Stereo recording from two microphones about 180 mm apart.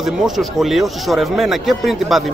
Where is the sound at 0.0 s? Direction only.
Centre (ahead or behind).